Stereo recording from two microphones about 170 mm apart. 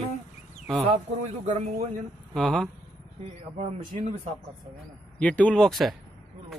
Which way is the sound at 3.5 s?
40° right (ahead or behind).